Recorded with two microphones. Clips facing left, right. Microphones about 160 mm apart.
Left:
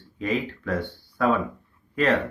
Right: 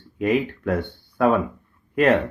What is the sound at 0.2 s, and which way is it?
Speech, 55° right (ahead or behind).